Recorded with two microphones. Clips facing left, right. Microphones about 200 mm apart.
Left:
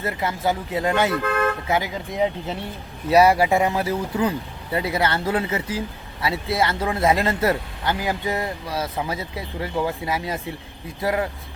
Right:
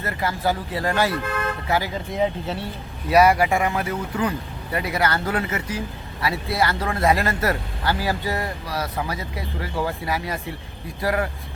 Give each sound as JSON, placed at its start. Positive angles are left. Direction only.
{"t": 0.0, "sound": "speech", "side_deg": 20}